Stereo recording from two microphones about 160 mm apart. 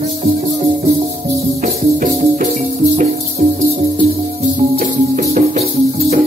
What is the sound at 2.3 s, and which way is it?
Music, 45° right (ahead or behind).